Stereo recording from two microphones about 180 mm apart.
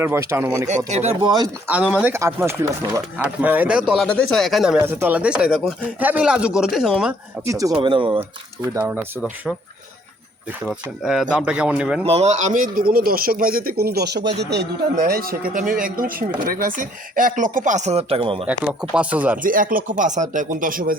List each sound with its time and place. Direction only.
0.0 s speech: 15° right (ahead or behind)
0.9 s speech: 40° right (ahead or behind)
1.2 s speech: 25° right (ahead or behind)
1.6 s speech: 10° right (ahead or behind)
4.8 s speech: 15° right (ahead or behind)
7.4 s speech: 20° right (ahead or behind)
8.7 s speech: 10° right (ahead or behind)
11.0 s speech: 5° right (ahead or behind)
12.0 s a man's voice: 35° right (ahead or behind)
18.4 s speech: 5° right (ahead or behind)
19.4 s a man's voice: 50° right (ahead or behind)